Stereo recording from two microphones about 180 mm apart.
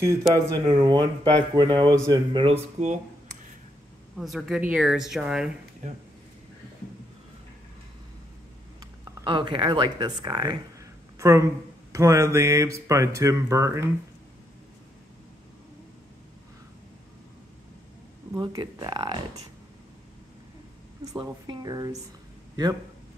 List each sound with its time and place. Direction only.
0.3 s speech: 20° right (ahead or behind); by 3.0 s 35° right (ahead or behind)
4.2 s speech: centre (ahead or behind)
9.2 s speech: 25° right (ahead or behind)
18.4 s speech: 25° right (ahead or behind)
21.0 s speech: 25° right (ahead or behind)